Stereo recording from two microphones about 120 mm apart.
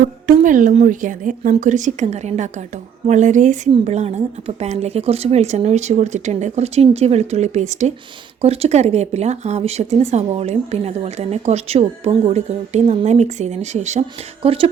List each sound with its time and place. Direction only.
0.3 s a woman's voice: 90° right
3.8 s speech: 70° right (ahead or behind)
8.4 s speech: 60° right (ahead or behind)
14.4 s speech: 50° right (ahead or behind)